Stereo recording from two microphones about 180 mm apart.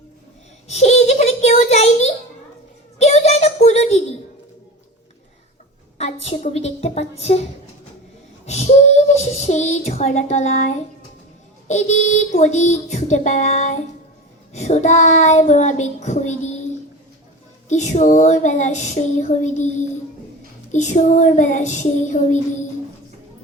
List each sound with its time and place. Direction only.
0.7 s a sound: 40° left (ahead or behind)
6.0 s a sound: 35° left (ahead or behind)
8.4 s child singing: 40° left (ahead or behind)
11.7 s music: 40° left (ahead or behind)
17.7 s music: 40° left (ahead or behind)
20.7 s child singing: 45° left (ahead or behind)